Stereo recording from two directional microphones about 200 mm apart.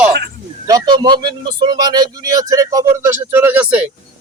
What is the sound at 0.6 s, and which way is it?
A man's voice, 20° right (ahead or behind).